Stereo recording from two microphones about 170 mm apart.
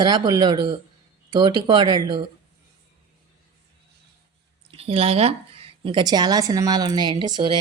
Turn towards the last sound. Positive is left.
turn(degrees=-25)  # may be behind; listen again after turning